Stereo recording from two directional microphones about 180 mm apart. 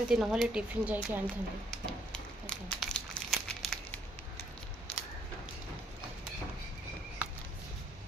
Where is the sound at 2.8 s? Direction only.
Centre (ahead or behind).